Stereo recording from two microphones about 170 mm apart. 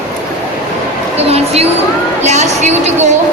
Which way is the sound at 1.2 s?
35° right (ahead or behind).